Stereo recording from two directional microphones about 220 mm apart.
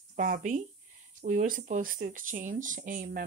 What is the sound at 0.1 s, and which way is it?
Speech, 35° right (ahead or behind).